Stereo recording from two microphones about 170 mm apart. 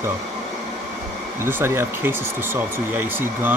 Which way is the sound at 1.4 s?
15° right (ahead or behind).